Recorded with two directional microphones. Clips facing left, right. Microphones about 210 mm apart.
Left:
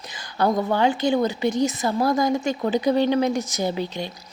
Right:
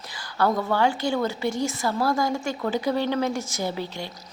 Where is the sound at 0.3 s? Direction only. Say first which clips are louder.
Left 2 dB; 20° left (ahead or behind).